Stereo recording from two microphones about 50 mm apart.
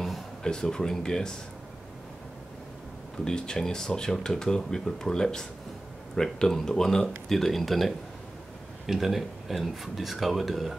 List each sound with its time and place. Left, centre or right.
0.4 s speech: centre
3.3 s speech: centre